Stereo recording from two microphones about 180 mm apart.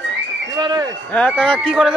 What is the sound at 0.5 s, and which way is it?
Speech, 20° right (ahead or behind).